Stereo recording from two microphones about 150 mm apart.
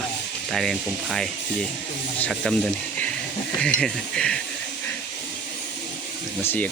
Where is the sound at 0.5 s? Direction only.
Centre (ahead or behind).